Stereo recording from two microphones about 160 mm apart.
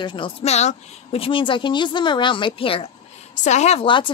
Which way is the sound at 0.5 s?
45° left (ahead or behind).